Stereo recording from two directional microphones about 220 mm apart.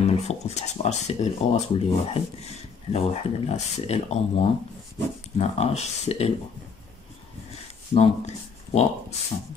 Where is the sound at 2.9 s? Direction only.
30° left (ahead or behind).